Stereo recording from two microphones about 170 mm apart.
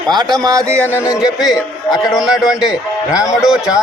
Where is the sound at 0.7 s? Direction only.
10° left (ahead or behind).